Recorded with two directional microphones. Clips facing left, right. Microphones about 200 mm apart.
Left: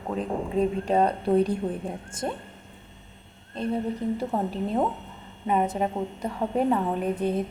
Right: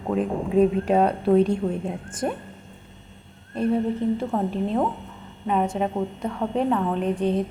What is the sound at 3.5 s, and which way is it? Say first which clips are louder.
Speech: right 6 dB; 10° right (ahead or behind).